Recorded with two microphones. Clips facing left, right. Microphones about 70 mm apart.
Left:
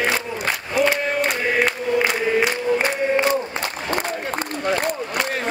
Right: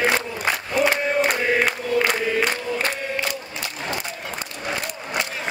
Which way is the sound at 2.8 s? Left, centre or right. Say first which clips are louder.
Left 6 dB; left.